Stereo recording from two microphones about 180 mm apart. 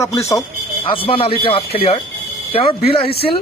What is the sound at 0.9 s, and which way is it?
A man's voice, 30° left (ahead or behind).